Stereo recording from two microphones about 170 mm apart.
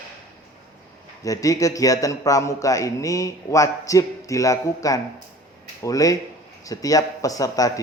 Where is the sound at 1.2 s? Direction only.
20° left (ahead or behind).